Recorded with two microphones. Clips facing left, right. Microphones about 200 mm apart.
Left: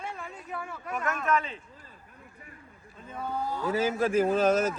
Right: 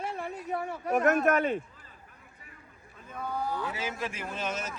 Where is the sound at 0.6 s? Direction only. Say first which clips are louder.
Right 5 dB; 35° right (ahead or behind).